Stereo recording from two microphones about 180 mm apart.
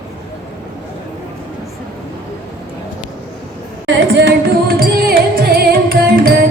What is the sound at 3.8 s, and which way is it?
Music, 75° right (ahead or behind).